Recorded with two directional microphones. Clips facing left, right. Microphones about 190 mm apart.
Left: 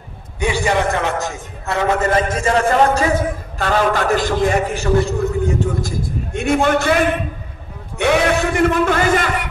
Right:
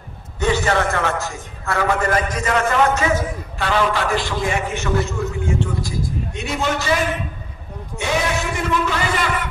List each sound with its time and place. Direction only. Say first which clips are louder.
0.4 s a man's voice: left 1 dB; 10° left (ahead or behind); by 3.2 s 35° left (ahead or behind)
3.2 s a man's voice: left 3 dB; 45° left (ahead or behind)